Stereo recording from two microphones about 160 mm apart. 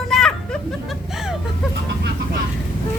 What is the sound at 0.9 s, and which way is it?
Speech, centre (ahead or behind).